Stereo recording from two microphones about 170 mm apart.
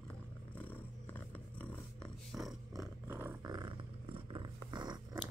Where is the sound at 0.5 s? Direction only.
10° left (ahead or behind).